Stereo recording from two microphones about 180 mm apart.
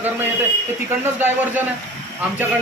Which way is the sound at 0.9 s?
10° right (ahead or behind).